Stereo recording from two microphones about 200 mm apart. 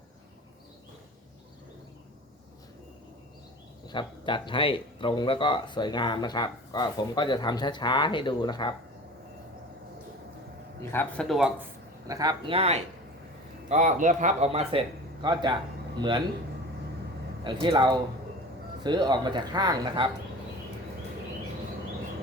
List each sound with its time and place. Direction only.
3.8 s speech: 25° left (ahead or behind)
10.9 s speech: centre (ahead or behind)
12.0 s speech: 20° right (ahead or behind)
17.4 s speech: 25° right (ahead or behind)